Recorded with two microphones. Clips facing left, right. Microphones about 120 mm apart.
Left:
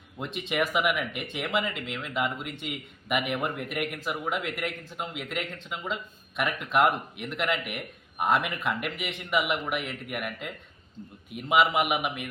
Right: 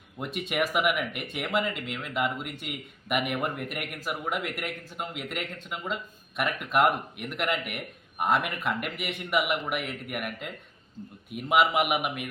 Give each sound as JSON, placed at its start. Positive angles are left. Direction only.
{"t": 0.2, "sound": "speech", "side_deg": -5}